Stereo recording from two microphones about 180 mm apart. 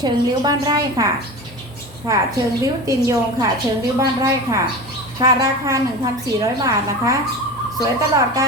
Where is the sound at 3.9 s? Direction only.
20° right (ahead or behind).